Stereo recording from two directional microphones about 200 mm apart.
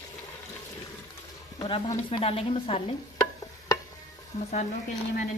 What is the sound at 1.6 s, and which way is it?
Speech, 20° left (ahead or behind).